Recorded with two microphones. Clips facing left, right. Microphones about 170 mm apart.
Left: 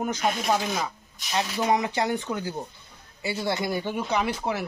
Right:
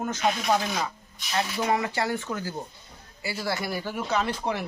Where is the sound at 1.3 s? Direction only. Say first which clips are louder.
Left 2 dB; 15° left (ahead or behind).